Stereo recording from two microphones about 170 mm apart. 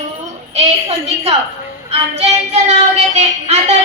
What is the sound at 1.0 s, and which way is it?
A woman's voice, 35° right (ahead or behind).